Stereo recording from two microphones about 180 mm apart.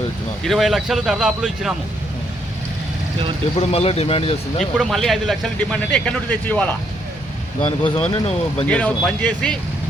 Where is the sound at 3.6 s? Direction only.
35° left (ahead or behind).